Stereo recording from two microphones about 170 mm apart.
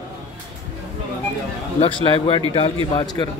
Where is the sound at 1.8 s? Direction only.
30° left (ahead or behind).